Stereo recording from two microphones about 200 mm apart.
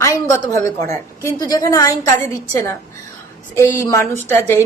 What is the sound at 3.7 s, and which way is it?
Speech, 15° left (ahead or behind).